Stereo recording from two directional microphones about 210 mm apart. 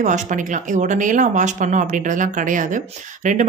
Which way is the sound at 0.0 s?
35° right (ahead or behind).